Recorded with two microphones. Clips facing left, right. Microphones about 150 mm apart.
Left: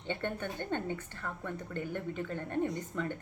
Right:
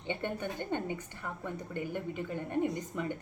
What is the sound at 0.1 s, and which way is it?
A woman's voice, 15° right (ahead or behind).